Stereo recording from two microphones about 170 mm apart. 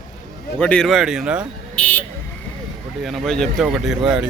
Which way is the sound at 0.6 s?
5° left (ahead or behind).